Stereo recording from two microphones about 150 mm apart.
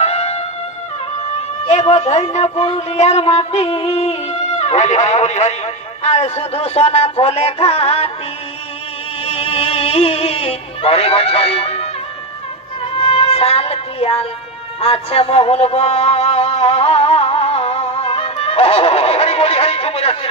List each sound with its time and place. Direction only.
0.0 s music: 45° left (ahead or behind)
1.4 s speech: 45° left (ahead or behind)
9.2 s speech: 40° left (ahead or behind)
13.1 s music: 45° left (ahead or behind)